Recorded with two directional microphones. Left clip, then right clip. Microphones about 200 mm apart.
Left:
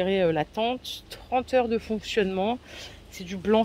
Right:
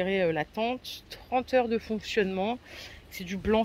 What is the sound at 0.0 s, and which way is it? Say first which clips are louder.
Speech: left 3 dB; centre (ahead or behind).